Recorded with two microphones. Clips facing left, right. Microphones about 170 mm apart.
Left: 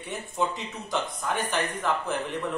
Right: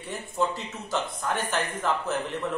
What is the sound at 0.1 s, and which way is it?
Speech, centre (ahead or behind).